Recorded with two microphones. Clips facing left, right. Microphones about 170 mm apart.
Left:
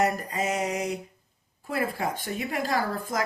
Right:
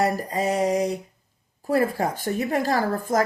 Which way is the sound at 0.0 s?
35° right (ahead or behind).